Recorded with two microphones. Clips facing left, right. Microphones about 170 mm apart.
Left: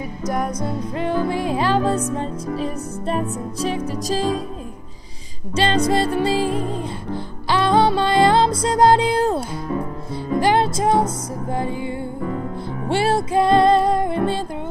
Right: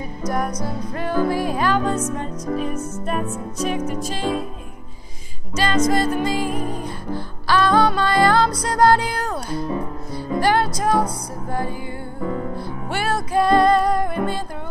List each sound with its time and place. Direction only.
0.9 s music: 20° left (ahead or behind)
5.6 s music: 30° left (ahead or behind)
12.8 s music: 25° left (ahead or behind)